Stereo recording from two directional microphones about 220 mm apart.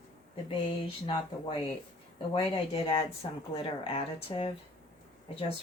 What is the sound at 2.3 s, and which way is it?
Speech, 25° left (ahead or behind).